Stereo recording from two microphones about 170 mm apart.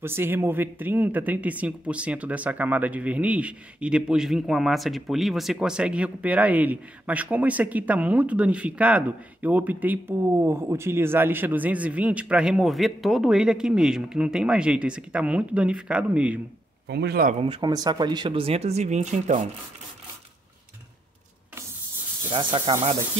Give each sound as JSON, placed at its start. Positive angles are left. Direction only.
{"t": 0.0, "sound": "speech", "side_deg": -15}
{"t": 16.8, "sound": "speech", "side_deg": -80}
{"t": 17.4, "sound": "speech", "side_deg": -25}
{"t": 22.3, "sound": "speech", "side_deg": -30}